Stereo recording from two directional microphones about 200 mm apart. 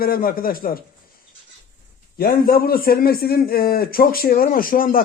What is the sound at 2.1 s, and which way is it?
Speech, 50° left (ahead or behind).